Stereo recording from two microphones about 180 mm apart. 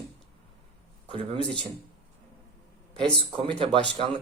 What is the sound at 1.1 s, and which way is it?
Speech, 30° right (ahead or behind).